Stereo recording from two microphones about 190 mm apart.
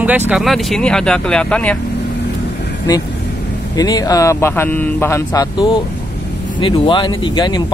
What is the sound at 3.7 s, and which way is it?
Speech, 20° left (ahead or behind).